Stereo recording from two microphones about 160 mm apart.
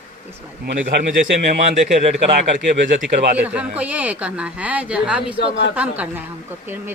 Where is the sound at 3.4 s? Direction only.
10° right (ahead or behind).